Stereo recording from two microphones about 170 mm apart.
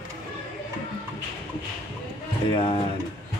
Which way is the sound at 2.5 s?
30° left (ahead or behind).